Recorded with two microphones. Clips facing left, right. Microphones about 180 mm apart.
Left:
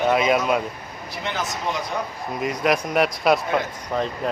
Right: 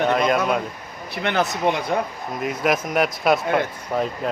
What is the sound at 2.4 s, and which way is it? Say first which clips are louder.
Speech: even; centre (ahead or behind).